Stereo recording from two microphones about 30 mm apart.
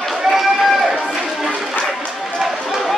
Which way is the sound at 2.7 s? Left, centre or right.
Centre.